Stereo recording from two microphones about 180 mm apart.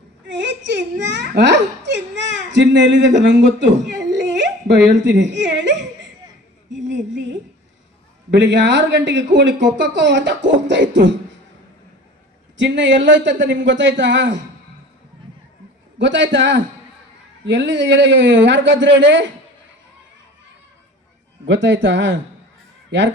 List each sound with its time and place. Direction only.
0.3 s speech: 80° right
4.1 s whimper: 80° right
4.9 s speech: 80° right
6.8 s a sound: 80° right
8.3 s speech: 85° right
12.5 s speech: 90° right
16.0 s speech: 80° right
21.4 s speech: 90° right